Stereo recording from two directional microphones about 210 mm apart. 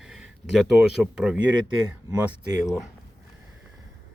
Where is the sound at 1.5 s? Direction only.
20° right (ahead or behind).